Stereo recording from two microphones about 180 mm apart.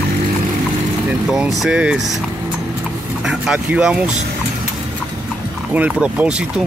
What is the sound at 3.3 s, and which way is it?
Speech, 5° right (ahead or behind).